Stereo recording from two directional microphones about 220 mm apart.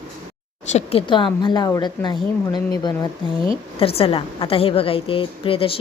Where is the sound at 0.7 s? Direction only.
30° left (ahead or behind).